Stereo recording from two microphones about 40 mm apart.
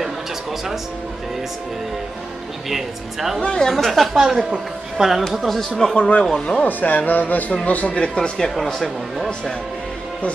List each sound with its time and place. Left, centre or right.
0.0 s music: centre
2.7 s a woman's voice: centre
3.3 s speech: left
3.6 s speech: centre
4.2 s a woman's voice: centre
5.3 s speech: centre
5.9 s speech: left
6.6 s speech: left
8.1 s speech: centre